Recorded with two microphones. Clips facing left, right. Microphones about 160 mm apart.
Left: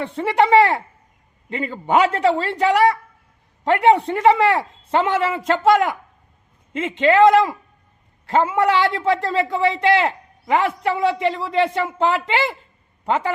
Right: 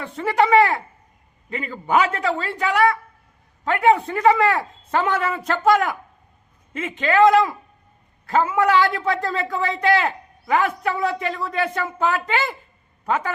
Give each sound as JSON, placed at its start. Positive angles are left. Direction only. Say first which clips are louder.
{"t": 0.0, "sound": "a man's voice", "louder": "left 2 dB", "side_deg": 25}